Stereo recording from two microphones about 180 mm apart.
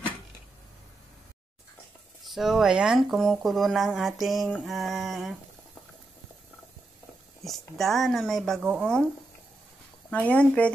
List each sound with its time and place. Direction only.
2.2 s speech: centre (ahead or behind)
7.4 s speech: centre (ahead or behind)
8.5 s speech: 10° right (ahead or behind)
10.1 s speech: 10° left (ahead or behind)